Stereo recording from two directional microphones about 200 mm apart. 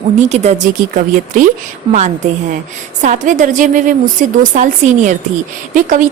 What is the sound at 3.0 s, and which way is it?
A woman's voice, 40° right (ahead or behind).